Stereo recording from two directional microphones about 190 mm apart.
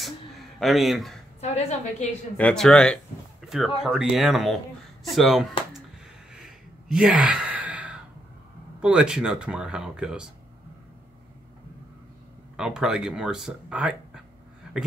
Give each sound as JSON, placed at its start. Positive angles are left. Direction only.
{"t": 0.0, "sound": "speech", "side_deg": 0}
{"t": 1.4, "sound": "a woman's voice", "side_deg": 35}
{"t": 2.3, "sound": "speech", "side_deg": 5}
{"t": 6.3, "sound": "gasp", "side_deg": -5}
{"t": 8.8, "sound": "speech", "side_deg": -5}
{"t": 12.5, "sound": "speech", "side_deg": -5}